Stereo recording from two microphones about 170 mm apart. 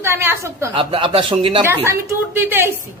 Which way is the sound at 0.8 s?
30° right (ahead or behind).